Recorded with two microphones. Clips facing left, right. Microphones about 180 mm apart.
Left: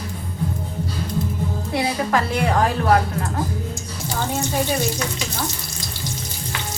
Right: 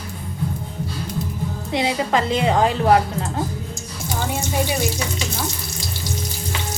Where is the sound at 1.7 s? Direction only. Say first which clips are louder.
Right 1 dB; 20° right (ahead or behind).